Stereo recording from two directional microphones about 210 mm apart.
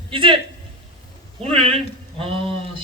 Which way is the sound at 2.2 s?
25° right (ahead or behind).